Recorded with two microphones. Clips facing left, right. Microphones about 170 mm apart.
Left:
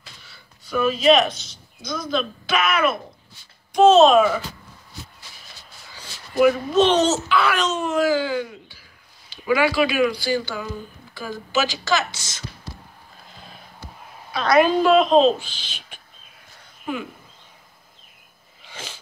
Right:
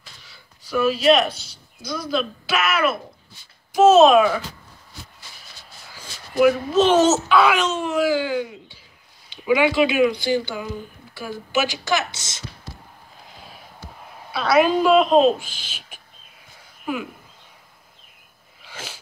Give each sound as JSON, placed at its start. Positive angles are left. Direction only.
{"t": 0.3, "sound": "a sound", "side_deg": -5}
{"t": 1.3, "sound": "speech", "side_deg": 20}
{"t": 1.8, "sound": "speech", "side_deg": -10}
{"t": 5.9, "sound": "speech", "side_deg": -5}
{"t": 14.3, "sound": "speech", "side_deg": -5}
{"t": 18.6, "sound": "sneeze", "side_deg": -10}